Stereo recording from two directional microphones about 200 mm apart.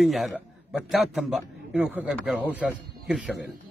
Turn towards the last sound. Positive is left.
turn(degrees=-5)  # may be behind; listen again after turning